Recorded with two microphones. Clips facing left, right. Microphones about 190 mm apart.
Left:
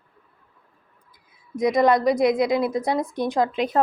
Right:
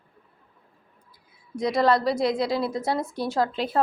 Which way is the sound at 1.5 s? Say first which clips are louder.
Left 3 dB; 20° left (ahead or behind).